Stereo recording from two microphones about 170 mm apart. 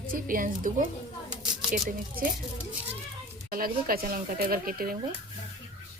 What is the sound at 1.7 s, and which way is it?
Speech, 50° right (ahead or behind).